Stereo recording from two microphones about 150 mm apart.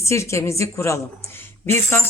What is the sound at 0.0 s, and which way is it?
A woman's voice, 20° left (ahead or behind).